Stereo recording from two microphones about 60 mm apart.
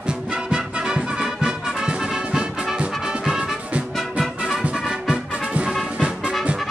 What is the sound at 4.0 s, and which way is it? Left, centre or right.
Music, centre.